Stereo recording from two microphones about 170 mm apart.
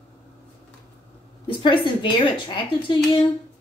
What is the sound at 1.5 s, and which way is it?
Speech, 30° left (ahead or behind).